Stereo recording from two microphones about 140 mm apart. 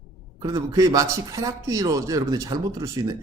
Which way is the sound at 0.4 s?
25° right (ahead or behind).